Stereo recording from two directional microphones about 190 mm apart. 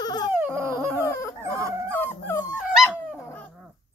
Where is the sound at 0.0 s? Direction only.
20° left (ahead or behind).